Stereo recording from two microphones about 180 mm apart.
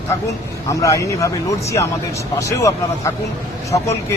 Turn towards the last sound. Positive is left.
turn(degrees=20)  # may be behind; listen again after turning